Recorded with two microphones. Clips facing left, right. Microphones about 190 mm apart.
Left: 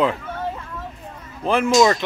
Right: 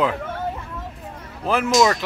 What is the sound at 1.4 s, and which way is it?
Speech, 5° right (ahead or behind).